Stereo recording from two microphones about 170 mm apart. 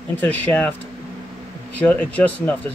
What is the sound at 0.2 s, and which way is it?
Speech, 10° left (ahead or behind).